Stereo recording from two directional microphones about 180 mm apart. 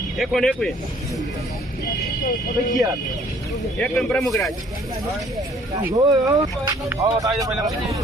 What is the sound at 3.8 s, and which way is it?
Speech, centre (ahead or behind).